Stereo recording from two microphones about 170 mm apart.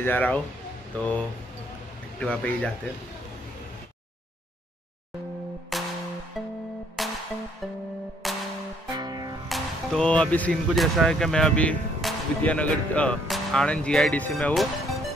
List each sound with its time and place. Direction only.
0.0 s speech: 10° left (ahead or behind)
5.7 s music: centre (ahead or behind)
7.0 s music: centre (ahead or behind)
8.2 s music: centre (ahead or behind)
8.9 s music: 25° right (ahead or behind)
9.5 s speech: 5° left (ahead or behind)